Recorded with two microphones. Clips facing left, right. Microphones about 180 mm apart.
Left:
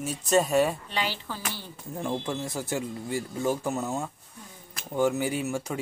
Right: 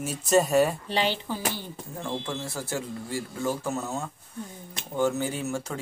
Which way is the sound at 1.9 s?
15° left (ahead or behind).